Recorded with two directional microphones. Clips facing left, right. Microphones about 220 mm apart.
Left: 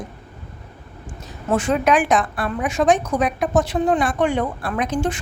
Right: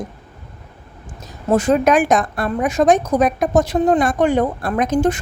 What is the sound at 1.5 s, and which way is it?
A woman's voice, 40° right (ahead or behind).